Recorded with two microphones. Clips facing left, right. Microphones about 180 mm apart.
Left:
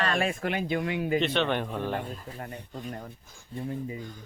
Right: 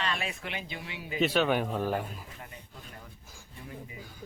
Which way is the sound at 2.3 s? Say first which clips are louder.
Left 9 dB; 50° left (ahead or behind).